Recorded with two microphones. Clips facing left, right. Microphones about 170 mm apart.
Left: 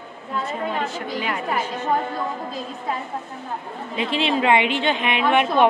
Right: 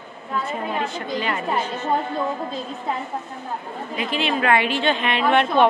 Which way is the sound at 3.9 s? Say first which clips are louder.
Left 2 dB; 25° left (ahead or behind).